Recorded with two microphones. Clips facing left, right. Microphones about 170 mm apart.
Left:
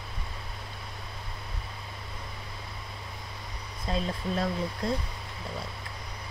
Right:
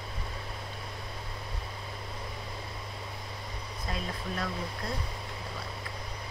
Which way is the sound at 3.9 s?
25° left (ahead or behind).